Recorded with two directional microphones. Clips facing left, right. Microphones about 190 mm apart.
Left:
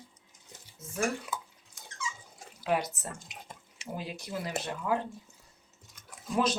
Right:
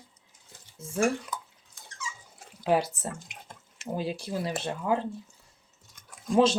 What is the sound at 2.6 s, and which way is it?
Speech, 30° right (ahead or behind).